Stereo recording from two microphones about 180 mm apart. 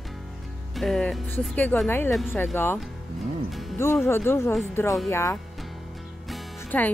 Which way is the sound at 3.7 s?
15° left (ahead or behind).